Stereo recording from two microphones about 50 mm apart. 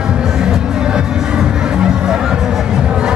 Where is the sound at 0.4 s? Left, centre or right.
Centre.